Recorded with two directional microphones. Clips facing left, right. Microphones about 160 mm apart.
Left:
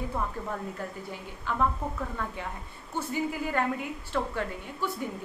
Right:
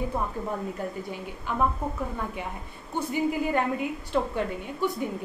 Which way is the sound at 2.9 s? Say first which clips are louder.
Right 4 dB; 20° right (ahead or behind).